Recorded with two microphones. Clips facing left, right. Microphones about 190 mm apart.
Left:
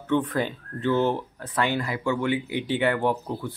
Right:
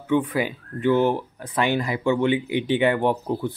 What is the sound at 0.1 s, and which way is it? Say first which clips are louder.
Speech: right 2 dB; 10° right (ahead or behind).